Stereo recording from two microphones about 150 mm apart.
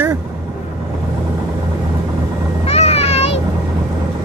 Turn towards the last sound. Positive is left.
turn(degrees=45)  # may be behind; listen again after turning